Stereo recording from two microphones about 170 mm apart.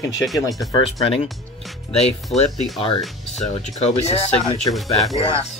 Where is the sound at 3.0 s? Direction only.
Centre (ahead or behind).